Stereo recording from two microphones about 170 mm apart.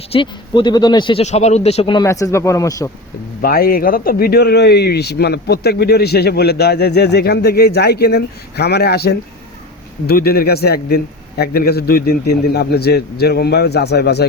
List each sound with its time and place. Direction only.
0.1 s speech: 30° left (ahead or behind)
1.2 s speech: 40° left (ahead or behind)
2.0 s speech: 20° left (ahead or behind)
3.4 s speech: 60° left (ahead or behind)